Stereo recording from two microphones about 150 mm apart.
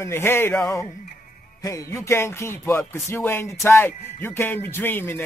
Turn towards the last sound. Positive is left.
turn(degrees=15)  # may be behind; listen again after turning